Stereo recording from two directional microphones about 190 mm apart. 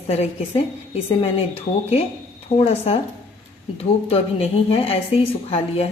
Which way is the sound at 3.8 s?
30° left (ahead or behind).